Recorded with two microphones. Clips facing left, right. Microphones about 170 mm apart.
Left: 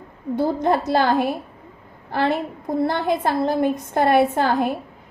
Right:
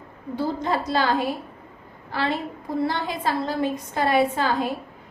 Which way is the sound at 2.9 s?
55° left (ahead or behind).